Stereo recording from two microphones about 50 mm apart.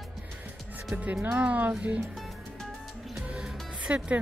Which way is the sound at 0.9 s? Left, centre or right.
Right.